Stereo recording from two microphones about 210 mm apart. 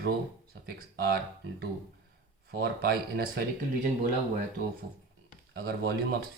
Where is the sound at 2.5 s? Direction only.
50° right (ahead or behind).